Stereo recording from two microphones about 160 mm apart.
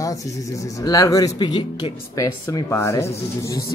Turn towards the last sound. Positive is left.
turn(degrees=15)  # may be behind; listen again after turning